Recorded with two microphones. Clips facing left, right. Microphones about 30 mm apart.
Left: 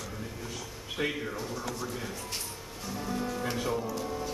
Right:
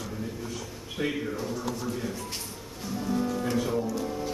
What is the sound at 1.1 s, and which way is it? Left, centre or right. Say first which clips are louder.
Speech: right 4 dB; centre.